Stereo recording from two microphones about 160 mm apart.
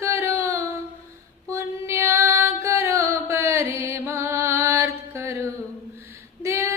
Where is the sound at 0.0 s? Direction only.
15° right (ahead or behind).